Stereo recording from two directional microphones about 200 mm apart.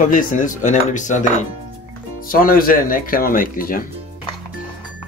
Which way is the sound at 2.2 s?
45° left (ahead or behind).